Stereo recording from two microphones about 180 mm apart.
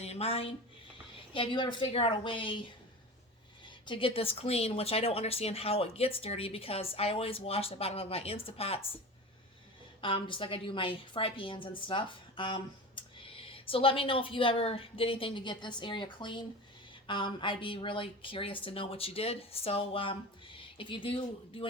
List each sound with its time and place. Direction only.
0.0 s a sound: 35° left (ahead or behind)
1.3 s a woman's voice: 30° left (ahead or behind)
10.0 s a woman's voice: 30° left (ahead or behind)